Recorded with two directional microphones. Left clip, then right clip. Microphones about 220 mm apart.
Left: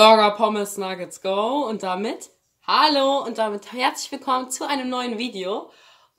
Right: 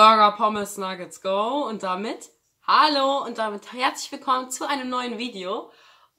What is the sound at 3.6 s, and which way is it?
Speech, 45° right (ahead or behind).